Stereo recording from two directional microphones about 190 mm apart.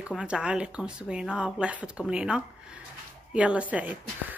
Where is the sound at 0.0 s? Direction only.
5° right (ahead or behind).